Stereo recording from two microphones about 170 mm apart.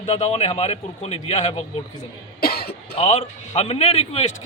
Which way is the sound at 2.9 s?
35° left (ahead or behind).